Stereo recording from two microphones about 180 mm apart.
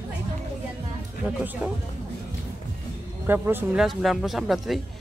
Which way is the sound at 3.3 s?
10° right (ahead or behind).